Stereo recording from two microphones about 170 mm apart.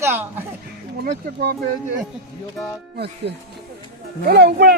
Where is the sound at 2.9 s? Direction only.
75° right (ahead or behind).